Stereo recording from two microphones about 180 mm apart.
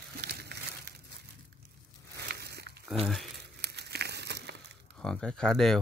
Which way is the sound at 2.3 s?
65° right (ahead or behind).